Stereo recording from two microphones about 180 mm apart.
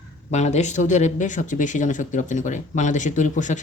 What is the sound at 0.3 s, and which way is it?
Speech, 40° left (ahead or behind).